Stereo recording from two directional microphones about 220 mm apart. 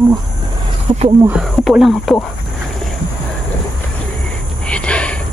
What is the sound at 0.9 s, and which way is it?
Speech, 30° right (ahead or behind).